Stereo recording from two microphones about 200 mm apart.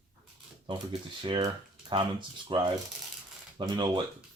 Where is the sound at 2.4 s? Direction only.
25° right (ahead or behind).